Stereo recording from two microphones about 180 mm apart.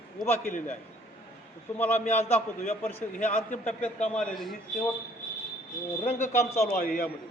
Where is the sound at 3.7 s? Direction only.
5° left (ahead or behind).